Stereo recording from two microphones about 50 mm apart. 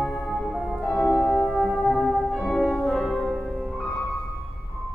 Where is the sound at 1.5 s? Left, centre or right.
Centre.